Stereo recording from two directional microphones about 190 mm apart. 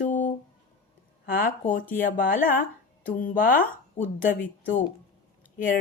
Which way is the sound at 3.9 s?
10° left (ahead or behind).